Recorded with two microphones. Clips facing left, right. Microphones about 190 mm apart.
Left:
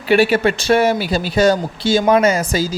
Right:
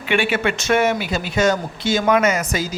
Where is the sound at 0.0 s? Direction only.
35° left (ahead or behind).